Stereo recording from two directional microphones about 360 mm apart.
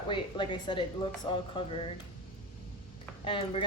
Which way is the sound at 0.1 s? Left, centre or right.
Centre.